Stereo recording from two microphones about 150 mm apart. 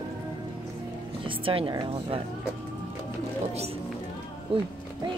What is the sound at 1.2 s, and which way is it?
Speech, 35° right (ahead or behind).